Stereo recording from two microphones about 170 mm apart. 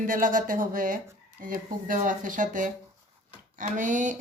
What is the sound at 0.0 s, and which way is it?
A woman's voice, 55° right (ahead or behind).